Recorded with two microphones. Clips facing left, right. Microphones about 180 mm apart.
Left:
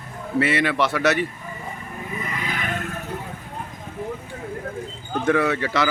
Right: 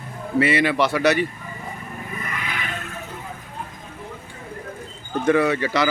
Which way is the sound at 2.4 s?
45° left (ahead or behind).